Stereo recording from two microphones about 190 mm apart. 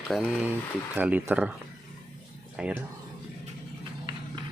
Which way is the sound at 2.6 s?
5° right (ahead or behind).